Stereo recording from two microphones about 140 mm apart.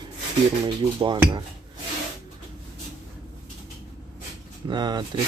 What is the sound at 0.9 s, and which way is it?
Speech, 35° right (ahead or behind).